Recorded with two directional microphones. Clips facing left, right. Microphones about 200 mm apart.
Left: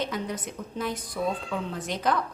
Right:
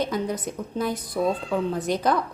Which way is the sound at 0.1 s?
40° right (ahead or behind).